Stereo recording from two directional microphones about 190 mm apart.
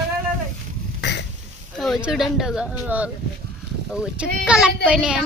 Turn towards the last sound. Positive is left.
turn(degrees=-5)  # may be behind; listen again after turning